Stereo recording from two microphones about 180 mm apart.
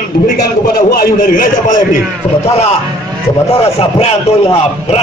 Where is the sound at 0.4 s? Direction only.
55° left (ahead or behind).